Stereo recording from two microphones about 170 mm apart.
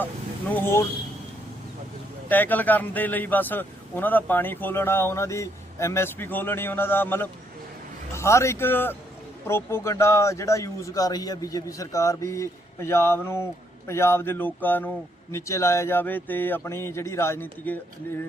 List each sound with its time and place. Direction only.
0.5 s a man's voice: 15° left (ahead or behind)
2.3 s a man's voice: 10° left (ahead or behind)